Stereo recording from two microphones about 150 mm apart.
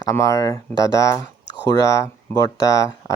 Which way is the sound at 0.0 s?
20° left (ahead or behind).